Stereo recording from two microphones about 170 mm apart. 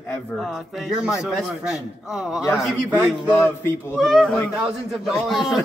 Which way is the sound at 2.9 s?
15° left (ahead or behind).